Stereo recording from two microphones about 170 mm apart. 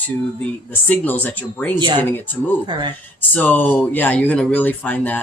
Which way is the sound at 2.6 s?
25° right (ahead or behind).